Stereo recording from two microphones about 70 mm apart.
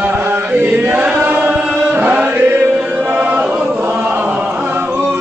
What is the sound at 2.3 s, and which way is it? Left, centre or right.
Music, right.